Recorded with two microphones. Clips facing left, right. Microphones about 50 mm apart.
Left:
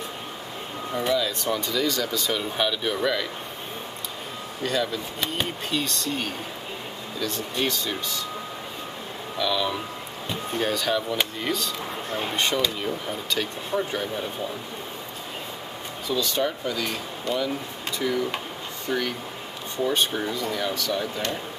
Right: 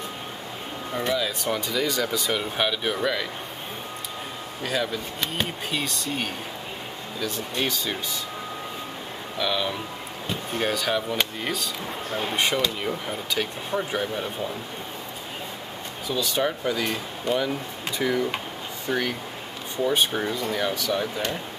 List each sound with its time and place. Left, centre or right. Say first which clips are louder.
0.9 s speech: left 1 dB; centre
4.6 s speech: left 1 dB; centre
9.4 s speech: left 1 dB; centre
16.1 s speech: even; centre